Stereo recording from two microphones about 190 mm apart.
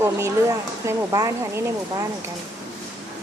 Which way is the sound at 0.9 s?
15° right (ahead or behind).